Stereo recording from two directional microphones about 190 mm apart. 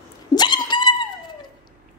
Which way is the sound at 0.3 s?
20° left (ahead or behind).